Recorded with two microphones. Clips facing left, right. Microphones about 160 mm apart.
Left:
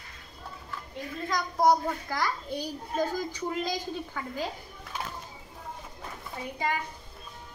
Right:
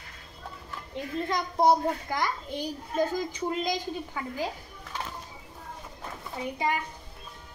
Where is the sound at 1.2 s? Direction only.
25° right (ahead or behind).